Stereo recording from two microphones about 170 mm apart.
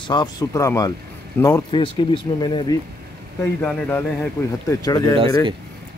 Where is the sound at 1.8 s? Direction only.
30° left (ahead or behind).